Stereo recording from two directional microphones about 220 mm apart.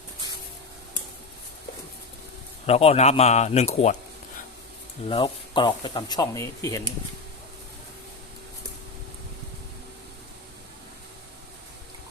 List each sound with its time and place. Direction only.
2.6 s speech: 25° left (ahead or behind)
5.0 s speech: 20° left (ahead or behind)